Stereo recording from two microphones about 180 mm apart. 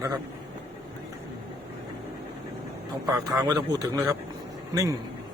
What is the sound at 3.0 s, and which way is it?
Speech, 20° right (ahead or behind).